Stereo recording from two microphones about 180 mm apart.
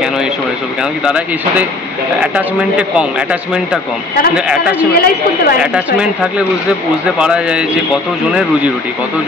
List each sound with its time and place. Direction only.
1.0 s speech: 5° right (ahead or behind)
3.0 s speech: 5° right (ahead or behind)
4.9 s a woman's voice: 60° left (ahead or behind)
5.6 s speech: 5° right (ahead or behind)